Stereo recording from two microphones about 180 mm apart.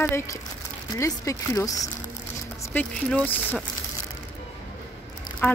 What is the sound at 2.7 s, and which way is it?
Speech, 5° left (ahead or behind).